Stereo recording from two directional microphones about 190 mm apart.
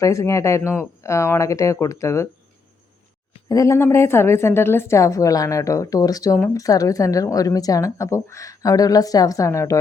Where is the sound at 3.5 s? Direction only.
15° left (ahead or behind).